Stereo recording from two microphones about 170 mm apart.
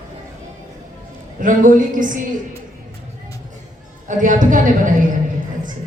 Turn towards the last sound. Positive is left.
turn(degrees=-50)  # may be behind; listen again after turning